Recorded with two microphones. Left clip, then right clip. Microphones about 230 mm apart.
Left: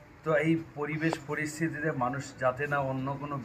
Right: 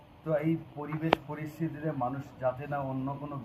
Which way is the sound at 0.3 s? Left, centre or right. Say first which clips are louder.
Left 3 dB; left.